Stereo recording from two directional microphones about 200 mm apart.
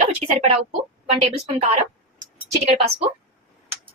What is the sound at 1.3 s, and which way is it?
Speech, 30° right (ahead or behind).